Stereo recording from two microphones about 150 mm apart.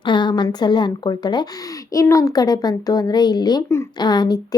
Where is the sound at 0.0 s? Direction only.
30° left (ahead or behind).